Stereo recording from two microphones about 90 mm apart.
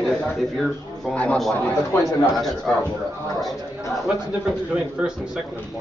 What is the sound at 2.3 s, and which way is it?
Speech, 5° left (ahead or behind).